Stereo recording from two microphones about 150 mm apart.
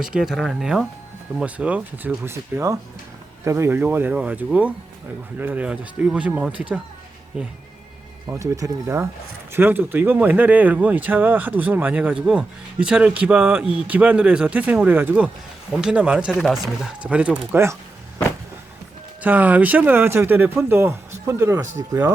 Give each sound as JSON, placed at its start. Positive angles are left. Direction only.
{"t": 0.0, "sound": "speech", "side_deg": -5}
{"t": 8.4, "sound": "speech", "side_deg": -20}
{"t": 19.2, "sound": "speech", "side_deg": -10}